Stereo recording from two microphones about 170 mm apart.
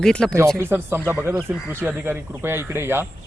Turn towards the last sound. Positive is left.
turn(degrees=-15)  # may be behind; listen again after turning